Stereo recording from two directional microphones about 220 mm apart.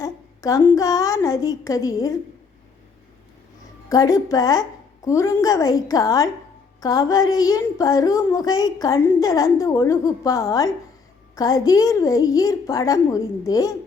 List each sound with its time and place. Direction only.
0.0 s a woman's voice: 15° left (ahead or behind)
3.8 s a woman's voice: 15° left (ahead or behind)